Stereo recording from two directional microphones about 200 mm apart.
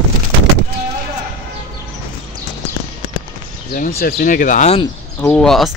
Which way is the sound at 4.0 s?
45° left (ahead or behind).